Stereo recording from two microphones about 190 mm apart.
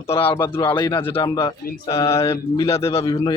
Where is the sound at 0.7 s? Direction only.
25° left (ahead or behind).